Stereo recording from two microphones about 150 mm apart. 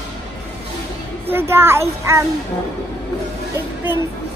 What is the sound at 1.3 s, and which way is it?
Speech, 15° right (ahead or behind).